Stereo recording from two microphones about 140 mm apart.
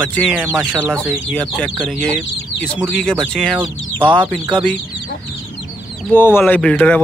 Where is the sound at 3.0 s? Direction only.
5° left (ahead or behind).